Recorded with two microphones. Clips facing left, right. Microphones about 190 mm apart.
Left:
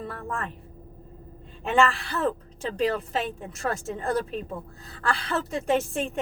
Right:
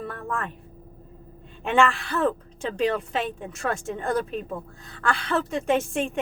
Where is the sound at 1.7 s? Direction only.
35° left (ahead or behind).